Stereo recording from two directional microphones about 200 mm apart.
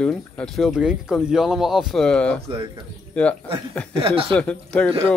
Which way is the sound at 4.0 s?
25° right (ahead or behind).